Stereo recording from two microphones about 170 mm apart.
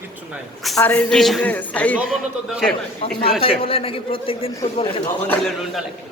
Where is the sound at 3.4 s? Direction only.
35° left (ahead or behind).